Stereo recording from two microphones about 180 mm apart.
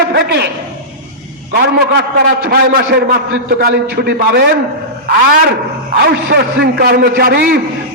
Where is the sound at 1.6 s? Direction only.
65° right (ahead or behind).